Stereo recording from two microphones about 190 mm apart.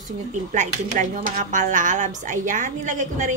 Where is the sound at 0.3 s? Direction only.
45° right (ahead or behind).